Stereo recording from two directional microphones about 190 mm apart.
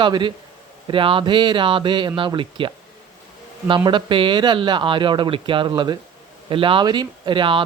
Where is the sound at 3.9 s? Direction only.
25° right (ahead or behind).